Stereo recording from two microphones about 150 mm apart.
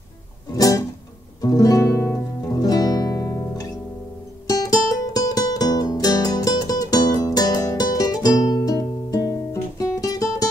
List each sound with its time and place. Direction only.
0.6 s music: 25° left (ahead or behind)
5.1 s music: 25° left (ahead or behind)